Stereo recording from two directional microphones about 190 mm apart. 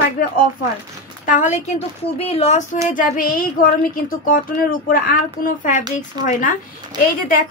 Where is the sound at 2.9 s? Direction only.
45° left (ahead or behind).